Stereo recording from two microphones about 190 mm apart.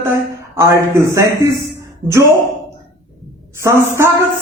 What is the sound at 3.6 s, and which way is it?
Speech, 15° right (ahead or behind).